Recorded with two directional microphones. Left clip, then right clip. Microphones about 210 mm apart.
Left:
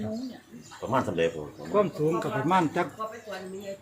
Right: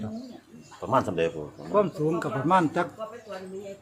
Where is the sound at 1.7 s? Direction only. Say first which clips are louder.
Right 1 dB; 20° right (ahead or behind).